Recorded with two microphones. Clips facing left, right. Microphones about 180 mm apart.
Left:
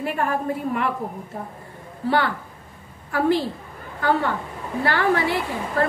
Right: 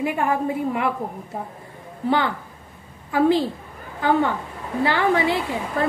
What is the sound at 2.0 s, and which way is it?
A woman's voice, 20° right (ahead or behind).